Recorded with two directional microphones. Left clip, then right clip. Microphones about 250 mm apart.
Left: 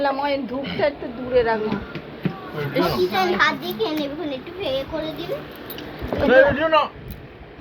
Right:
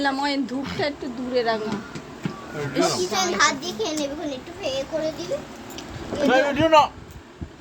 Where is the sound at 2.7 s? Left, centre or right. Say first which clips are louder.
Left 2 dB; centre.